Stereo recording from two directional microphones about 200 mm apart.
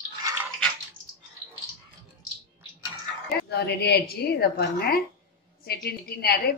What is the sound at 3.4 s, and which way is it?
A woman's voice, 55° left (ahead or behind).